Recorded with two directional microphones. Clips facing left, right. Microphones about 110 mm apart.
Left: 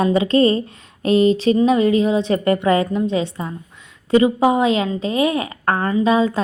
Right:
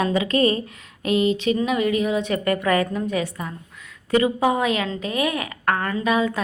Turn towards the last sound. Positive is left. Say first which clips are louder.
# left 5 dB
turn(degrees=30)  # may be behind; listen again after turning